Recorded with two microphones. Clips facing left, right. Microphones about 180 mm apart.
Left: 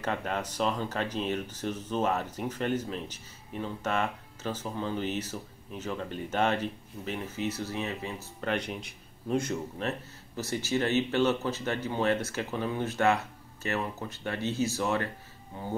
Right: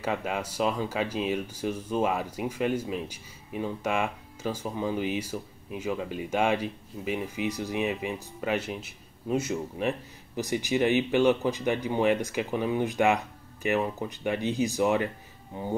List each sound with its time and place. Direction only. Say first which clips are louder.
0.0 s speech: right 2 dB; 10° right (ahead or behind)